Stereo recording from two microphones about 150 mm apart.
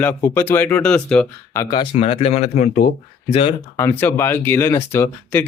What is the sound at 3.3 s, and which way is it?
Speech, 40° left (ahead or behind).